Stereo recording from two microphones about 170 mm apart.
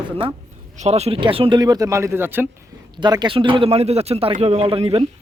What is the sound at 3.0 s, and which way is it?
A man's voice, 25° right (ahead or behind).